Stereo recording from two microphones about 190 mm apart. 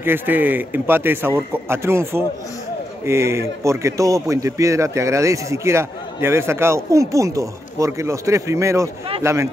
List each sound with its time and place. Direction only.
0.0 s a man's voice: 10° right (ahead or behind)